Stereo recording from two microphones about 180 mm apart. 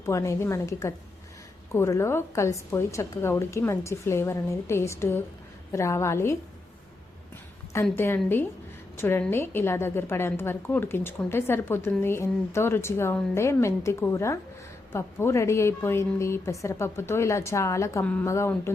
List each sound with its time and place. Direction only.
0.0 s a woman's voice: 15° left (ahead or behind)
7.9 s a woman's voice: 10° left (ahead or behind)